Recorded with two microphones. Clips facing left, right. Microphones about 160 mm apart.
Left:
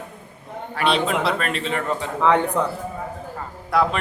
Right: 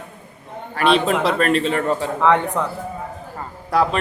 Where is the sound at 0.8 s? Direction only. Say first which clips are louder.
Right 4 dB; 45° right (ahead or behind).